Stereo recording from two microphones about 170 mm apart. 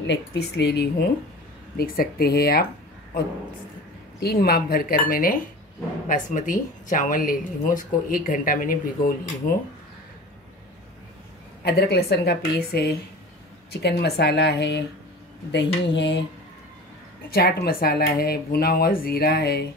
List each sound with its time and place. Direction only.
0.0 s a woman's voice: 90° left; by 2.7 s 65° left (ahead or behind)
4.2 s speech: 65° left (ahead or behind)
11.6 s a woman's voice: 70° left (ahead or behind); by 14.9 s 85° left
15.9 s speech: 90° left
17.3 s speech: 65° left (ahead or behind)